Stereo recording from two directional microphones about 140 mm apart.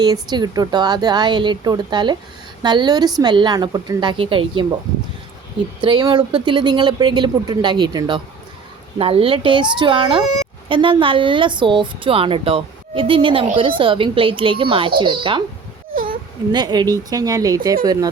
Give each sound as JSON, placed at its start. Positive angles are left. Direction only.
{"t": 0.0, "sound": "speech", "side_deg": -30}
{"t": 5.8, "sound": "speech", "side_deg": -35}
{"t": 15.9, "sound": "whimper", "side_deg": -90}
{"t": 16.5, "sound": "speech", "side_deg": -30}